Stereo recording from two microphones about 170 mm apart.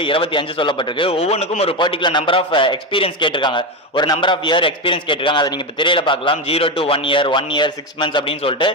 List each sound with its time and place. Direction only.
0.0 s speech: 30° left (ahead or behind)